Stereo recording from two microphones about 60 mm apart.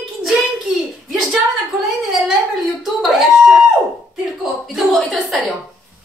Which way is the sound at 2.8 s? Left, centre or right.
Centre.